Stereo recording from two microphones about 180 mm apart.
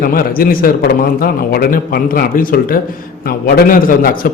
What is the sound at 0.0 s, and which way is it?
A man's voice, 55° left (ahead or behind).